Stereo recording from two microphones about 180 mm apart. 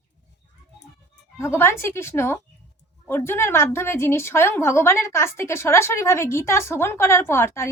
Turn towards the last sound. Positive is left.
turn(degrees=15)  # may be behind; listen again after turning